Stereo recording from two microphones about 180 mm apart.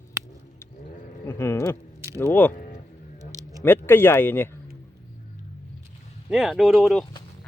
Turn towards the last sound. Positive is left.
turn(degrees=0)  # may be behind; listen again after turning